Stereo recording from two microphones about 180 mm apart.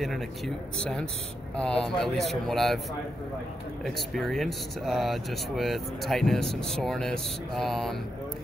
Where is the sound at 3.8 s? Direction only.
Centre (ahead or behind).